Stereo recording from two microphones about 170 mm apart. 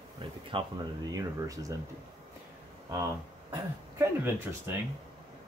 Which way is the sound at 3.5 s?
15° right (ahead or behind).